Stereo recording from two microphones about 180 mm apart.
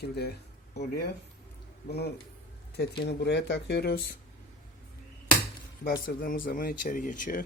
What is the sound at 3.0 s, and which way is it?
Speech, 65° left (ahead or behind).